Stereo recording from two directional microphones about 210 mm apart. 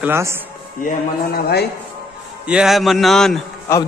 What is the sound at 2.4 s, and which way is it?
Speech, 5° right (ahead or behind).